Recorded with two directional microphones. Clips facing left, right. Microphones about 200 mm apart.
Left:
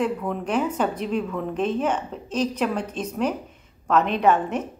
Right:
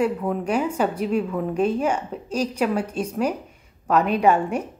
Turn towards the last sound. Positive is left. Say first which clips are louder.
# right 1 dB
turn(degrees=-10)  # may be behind; listen again after turning